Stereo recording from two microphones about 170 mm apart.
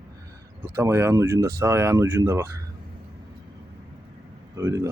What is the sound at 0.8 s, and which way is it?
Speech, 15° right (ahead or behind).